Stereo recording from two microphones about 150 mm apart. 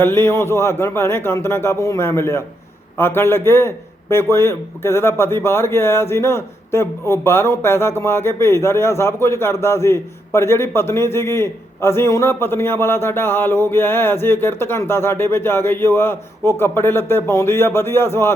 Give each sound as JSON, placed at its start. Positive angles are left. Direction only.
{"t": 0.0, "sound": "a man's voice", "side_deg": 15}